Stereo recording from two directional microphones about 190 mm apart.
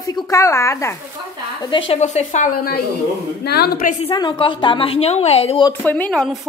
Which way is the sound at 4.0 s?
25° left (ahead or behind).